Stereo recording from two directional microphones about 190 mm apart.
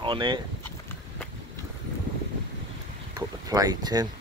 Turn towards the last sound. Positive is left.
turn(degrees=-20)  # may be behind; listen again after turning